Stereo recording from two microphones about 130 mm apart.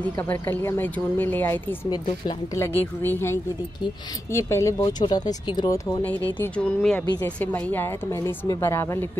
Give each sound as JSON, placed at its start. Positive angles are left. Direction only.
{"t": 0.3, "sound": "a woman's voice", "side_deg": 15}
{"t": 1.9, "sound": "speech", "side_deg": 30}
{"t": 2.6, "sound": "a woman's voice", "side_deg": 15}
{"t": 6.4, "sound": "a woman's voice", "side_deg": 10}